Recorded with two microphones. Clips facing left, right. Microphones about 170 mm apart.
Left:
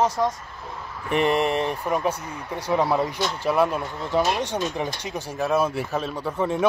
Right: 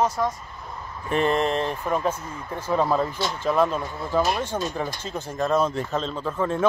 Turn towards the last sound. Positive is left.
turn(degrees=15)  # may be behind; listen again after turning